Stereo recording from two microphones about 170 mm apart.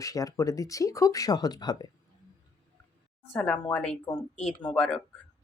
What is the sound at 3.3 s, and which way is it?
Speech, 5° left (ahead or behind).